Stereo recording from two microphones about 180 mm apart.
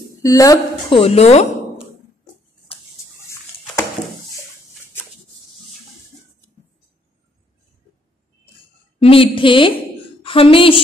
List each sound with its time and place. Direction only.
0.2 s a woman's voice: 20° left (ahead or behind); by 1.5 s 35° left (ahead or behind)
9.0 s a woman's voice: 30° left (ahead or behind)